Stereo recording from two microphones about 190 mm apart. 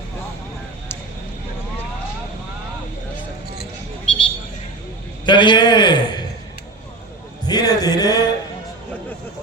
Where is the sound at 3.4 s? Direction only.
55° left (ahead or behind).